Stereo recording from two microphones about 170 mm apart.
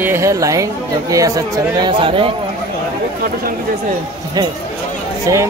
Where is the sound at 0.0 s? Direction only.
15° right (ahead or behind).